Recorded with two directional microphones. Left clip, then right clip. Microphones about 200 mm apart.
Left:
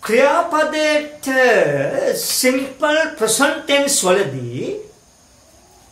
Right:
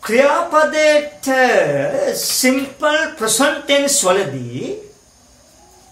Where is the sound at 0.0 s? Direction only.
10° left (ahead or behind).